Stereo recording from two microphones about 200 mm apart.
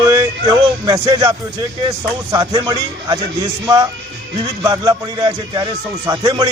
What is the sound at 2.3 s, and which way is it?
Speech, 20° right (ahead or behind).